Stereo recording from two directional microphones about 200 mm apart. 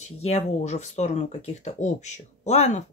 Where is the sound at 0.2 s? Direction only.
35° left (ahead or behind).